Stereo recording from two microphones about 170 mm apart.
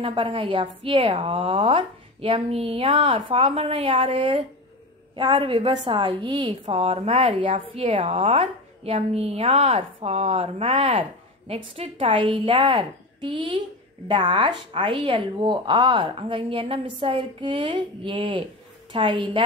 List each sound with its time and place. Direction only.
0.0 s a woman's voice: 30° right (ahead or behind)